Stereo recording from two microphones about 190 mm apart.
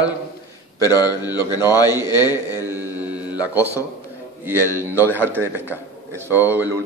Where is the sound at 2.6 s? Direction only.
10° right (ahead or behind).